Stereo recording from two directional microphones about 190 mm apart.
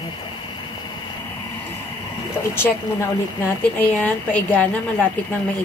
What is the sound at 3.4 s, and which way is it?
A woman's voice, 10° left (ahead or behind).